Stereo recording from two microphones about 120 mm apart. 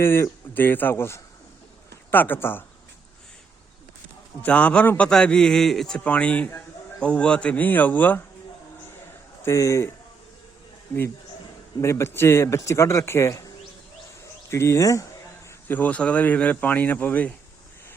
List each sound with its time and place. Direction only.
0.0 s a man's voice: 20° left (ahead or behind)
4.4 s a man's voice: 10° left (ahead or behind)
9.4 s speech: 25° left (ahead or behind)
10.9 s a man's voice: 15° left (ahead or behind)
14.5 s speech: 20° left (ahead or behind)
15.6 s a man's voice: 15° left (ahead or behind)